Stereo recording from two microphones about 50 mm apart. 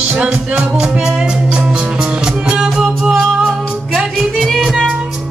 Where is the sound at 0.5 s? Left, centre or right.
Right.